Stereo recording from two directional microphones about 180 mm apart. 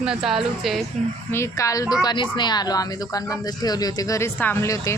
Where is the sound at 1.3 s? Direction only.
15° left (ahead or behind).